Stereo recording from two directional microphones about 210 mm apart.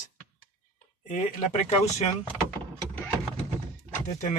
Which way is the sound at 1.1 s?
30° left (ahead or behind).